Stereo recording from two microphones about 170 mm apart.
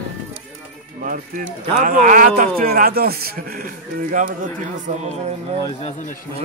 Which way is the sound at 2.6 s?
60° right (ahead or behind).